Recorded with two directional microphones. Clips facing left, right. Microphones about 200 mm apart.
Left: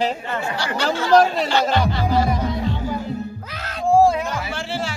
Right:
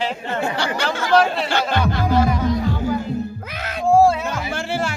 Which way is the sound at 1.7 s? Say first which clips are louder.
Even; 50° right (ahead or behind).